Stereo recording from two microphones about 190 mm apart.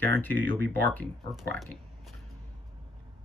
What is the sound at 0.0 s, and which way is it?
Speech, 10° left (ahead or behind).